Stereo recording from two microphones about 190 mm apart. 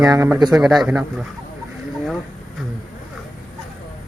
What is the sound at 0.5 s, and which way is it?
Speech, centre (ahead or behind).